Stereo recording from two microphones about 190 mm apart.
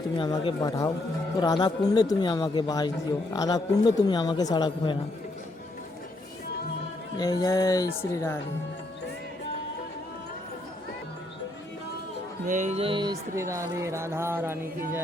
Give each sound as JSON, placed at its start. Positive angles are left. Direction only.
{"t": 0.2, "sound": "a man's voice", "side_deg": 25}
{"t": 7.2, "sound": "a man's voice", "side_deg": 20}
{"t": 12.5, "sound": "speech", "side_deg": -40}